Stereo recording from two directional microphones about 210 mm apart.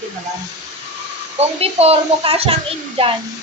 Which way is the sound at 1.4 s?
30° right (ahead or behind).